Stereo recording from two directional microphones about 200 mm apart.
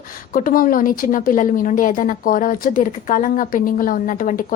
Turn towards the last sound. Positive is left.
turn(degrees=40)  # may be behind; listen again after turning